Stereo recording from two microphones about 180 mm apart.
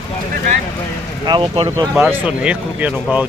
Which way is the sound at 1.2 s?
25° right (ahead or behind).